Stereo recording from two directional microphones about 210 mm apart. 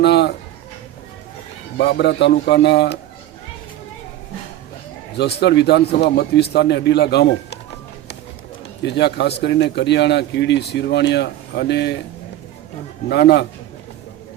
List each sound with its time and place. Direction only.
0.0 s a sound: 55° left (ahead or behind)
1.8 s a man's voice: 50° left (ahead or behind)
5.1 s a man's voice: 55° left (ahead or behind)
8.8 s a man's voice: 55° left (ahead or behind)
13.1 s a man's voice: 50° left (ahead or behind)